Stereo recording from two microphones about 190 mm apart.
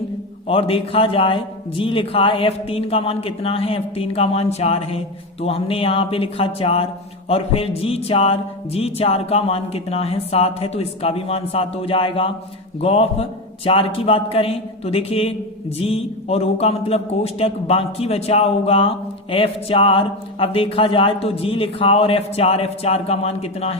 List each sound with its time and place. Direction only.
0.4 s a man's voice: 30° left (ahead or behind)